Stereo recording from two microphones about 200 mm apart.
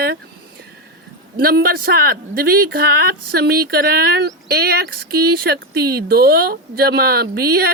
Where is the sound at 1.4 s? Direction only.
50° right (ahead or behind).